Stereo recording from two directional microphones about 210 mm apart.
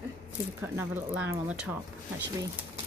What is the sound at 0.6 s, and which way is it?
Speech, 10° right (ahead or behind).